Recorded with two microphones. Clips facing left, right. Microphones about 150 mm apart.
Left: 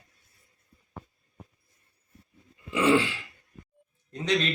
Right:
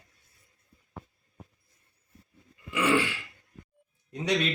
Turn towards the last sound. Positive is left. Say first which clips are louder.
# left 1 dB
turn(degrees=-10)  # may be behind; listen again after turning